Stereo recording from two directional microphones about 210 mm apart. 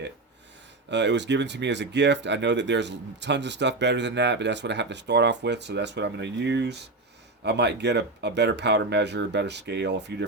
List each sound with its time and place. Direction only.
0.9 s speech: 55° right (ahead or behind)